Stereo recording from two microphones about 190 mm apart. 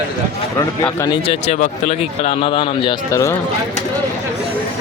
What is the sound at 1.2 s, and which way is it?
Speech, 35° left (ahead or behind).